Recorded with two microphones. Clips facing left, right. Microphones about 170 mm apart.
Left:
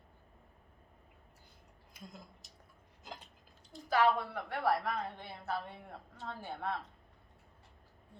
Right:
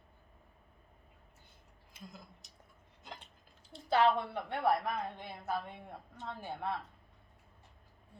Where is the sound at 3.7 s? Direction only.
25° right (ahead or behind).